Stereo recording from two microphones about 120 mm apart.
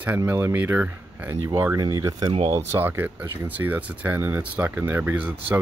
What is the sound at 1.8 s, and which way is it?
Speech, 30° right (ahead or behind).